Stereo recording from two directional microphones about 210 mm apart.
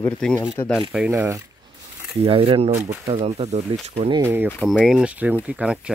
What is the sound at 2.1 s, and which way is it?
Speech, 25° right (ahead or behind).